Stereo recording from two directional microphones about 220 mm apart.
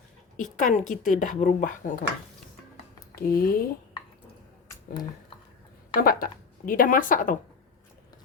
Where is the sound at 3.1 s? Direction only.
40° left (ahead or behind).